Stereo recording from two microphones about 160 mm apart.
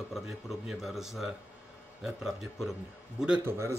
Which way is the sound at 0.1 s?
Centre (ahead or behind).